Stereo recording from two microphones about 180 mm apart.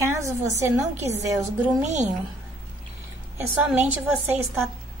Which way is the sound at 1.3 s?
15° right (ahead or behind).